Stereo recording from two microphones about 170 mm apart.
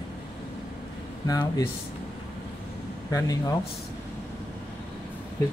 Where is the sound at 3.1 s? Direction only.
20° left (ahead or behind).